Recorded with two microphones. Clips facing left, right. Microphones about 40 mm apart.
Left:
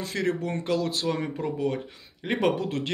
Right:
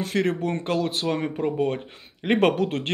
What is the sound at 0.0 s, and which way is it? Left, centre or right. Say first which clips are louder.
Speech: right 4 dB; right.